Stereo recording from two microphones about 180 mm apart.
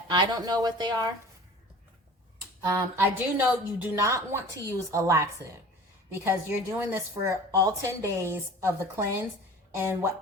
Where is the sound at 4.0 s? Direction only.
15° right (ahead or behind).